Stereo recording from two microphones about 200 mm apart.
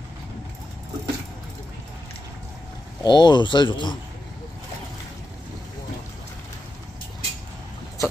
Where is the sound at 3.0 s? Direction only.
20° left (ahead or behind).